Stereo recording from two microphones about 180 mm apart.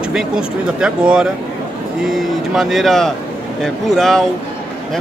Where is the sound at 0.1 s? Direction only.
5° right (ahead or behind).